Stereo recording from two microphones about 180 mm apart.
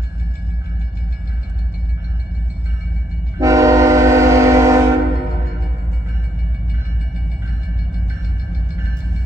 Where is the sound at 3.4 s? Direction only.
15° right (ahead or behind).